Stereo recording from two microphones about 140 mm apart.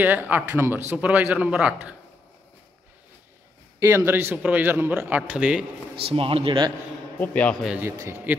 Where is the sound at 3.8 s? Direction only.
20° right (ahead or behind).